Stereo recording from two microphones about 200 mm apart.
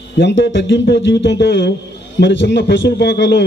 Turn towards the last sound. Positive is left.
turn(degrees=60)  # may be behind; listen again after turning